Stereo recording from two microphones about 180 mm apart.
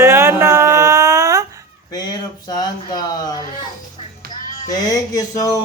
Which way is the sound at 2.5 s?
25° left (ahead or behind).